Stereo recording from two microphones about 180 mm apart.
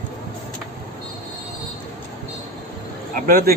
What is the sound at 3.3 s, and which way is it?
Speech, 55° right (ahead or behind).